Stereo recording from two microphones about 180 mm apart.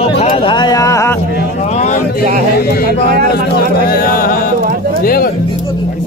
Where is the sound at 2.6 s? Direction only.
60° left (ahead or behind).